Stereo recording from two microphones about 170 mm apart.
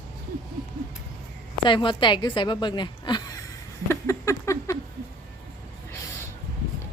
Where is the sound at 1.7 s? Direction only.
30° left (ahead or behind).